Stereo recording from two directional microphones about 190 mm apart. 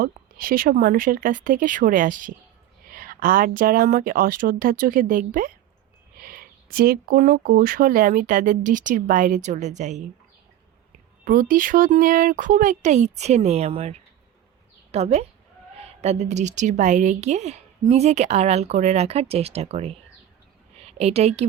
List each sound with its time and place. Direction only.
0.0 s speech: 50° right (ahead or behind)
11.3 s speech: 45° right (ahead or behind)
14.9 s a woman's voice: 35° right (ahead or behind)